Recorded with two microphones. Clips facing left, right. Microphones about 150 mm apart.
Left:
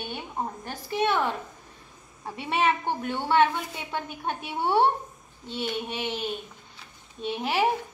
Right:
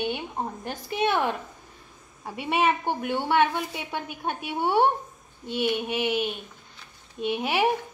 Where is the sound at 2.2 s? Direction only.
10° right (ahead or behind).